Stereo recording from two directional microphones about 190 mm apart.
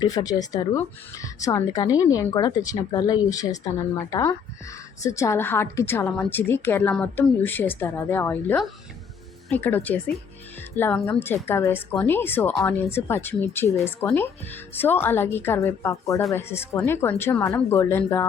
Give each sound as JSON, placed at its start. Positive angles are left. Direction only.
{"t": 0.0, "sound": "a woman's voice", "side_deg": 20}